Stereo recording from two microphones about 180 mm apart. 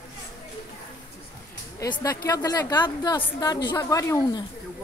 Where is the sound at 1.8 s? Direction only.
20° left (ahead or behind).